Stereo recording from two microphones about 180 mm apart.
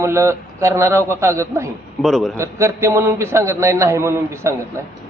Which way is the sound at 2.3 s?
15° right (ahead or behind).